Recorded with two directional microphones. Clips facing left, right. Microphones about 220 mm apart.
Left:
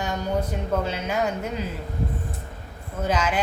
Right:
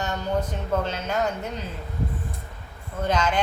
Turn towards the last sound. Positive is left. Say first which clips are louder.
# even
turn(degrees=5)  # may be behind; listen again after turning